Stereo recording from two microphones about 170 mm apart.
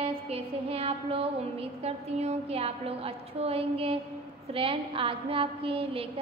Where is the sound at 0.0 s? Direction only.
35° right (ahead or behind).